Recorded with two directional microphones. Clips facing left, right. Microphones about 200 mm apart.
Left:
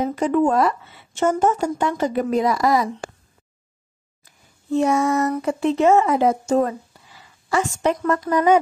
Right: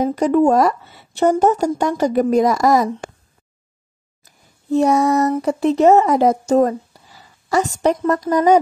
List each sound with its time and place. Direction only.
0.0 s speech: 40° right (ahead or behind)
4.2 s a sound: 40° right (ahead or behind)
5.4 s speech: 40° right (ahead or behind)